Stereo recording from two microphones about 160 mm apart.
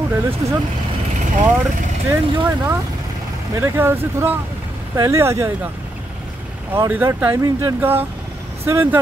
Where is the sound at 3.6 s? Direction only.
15° right (ahead or behind).